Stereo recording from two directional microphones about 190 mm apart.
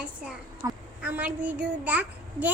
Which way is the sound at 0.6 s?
15° right (ahead or behind).